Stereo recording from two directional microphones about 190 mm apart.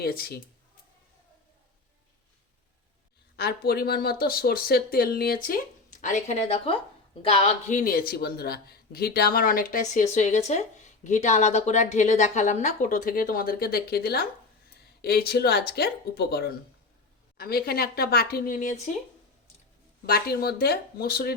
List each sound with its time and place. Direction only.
0.0 s speech: 55° left (ahead or behind)
3.3 s a woman's voice: 55° left (ahead or behind); by 7.8 s 30° left (ahead or behind)
7.8 s speech: 50° left (ahead or behind)
20.1 s speech: 55° left (ahead or behind)